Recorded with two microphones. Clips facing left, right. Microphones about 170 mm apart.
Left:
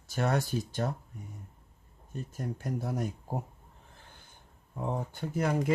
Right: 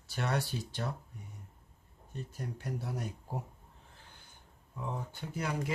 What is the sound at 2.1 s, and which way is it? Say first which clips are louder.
Speech: left 5 dB; 45° left (ahead or behind).